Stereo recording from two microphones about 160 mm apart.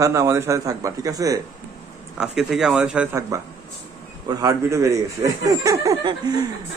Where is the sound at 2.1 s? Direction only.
5° right (ahead or behind).